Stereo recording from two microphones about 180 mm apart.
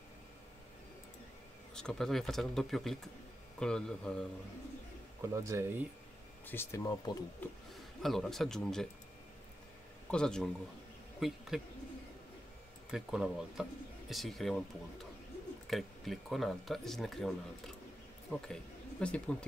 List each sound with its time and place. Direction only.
1.8 s speech: 5° left (ahead or behind)
5.3 s speech: 15° right (ahead or behind)
6.4 s speech: 10° left (ahead or behind)
7.4 s speech: 10° left (ahead or behind)
10.1 s speech: 5° left (ahead or behind)
12.9 s speech: 5° right (ahead or behind)
15.6 s speech: centre (ahead or behind)